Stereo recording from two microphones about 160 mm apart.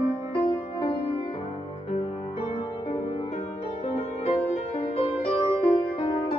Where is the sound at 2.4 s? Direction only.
40° left (ahead or behind).